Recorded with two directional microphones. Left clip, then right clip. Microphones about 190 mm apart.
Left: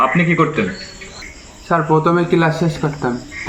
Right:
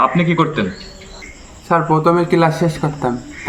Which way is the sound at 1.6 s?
20° right (ahead or behind).